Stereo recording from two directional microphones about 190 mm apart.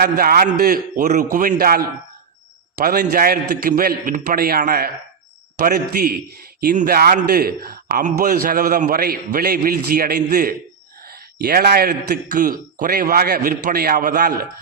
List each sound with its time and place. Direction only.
0.0 s a man's voice: 50° right (ahead or behind)